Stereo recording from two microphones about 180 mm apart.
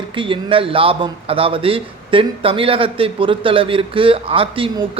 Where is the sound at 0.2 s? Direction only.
30° right (ahead or behind).